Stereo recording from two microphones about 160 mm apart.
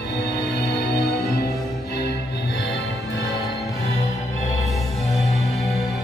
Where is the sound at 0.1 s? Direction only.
90° left.